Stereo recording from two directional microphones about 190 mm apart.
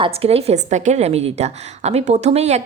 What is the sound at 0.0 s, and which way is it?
A woman's voice, 30° right (ahead or behind).